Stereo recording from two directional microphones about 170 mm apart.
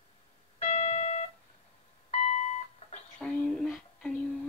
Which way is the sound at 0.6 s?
40° left (ahead or behind).